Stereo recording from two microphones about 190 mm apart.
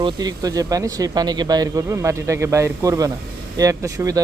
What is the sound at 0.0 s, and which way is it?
Speech, 20° right (ahead or behind).